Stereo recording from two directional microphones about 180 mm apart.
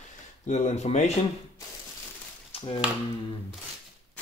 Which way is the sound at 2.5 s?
30° left (ahead or behind).